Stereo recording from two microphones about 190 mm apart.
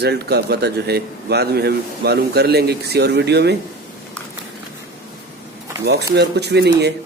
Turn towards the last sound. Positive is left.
turn(degrees=-60)  # may be behind; listen again after turning